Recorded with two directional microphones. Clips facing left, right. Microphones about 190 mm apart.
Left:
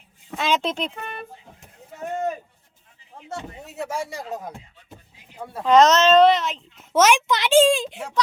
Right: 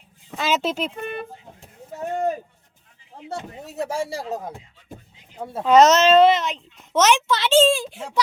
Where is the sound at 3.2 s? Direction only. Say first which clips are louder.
Right 2 dB; 35° right (ahead or behind).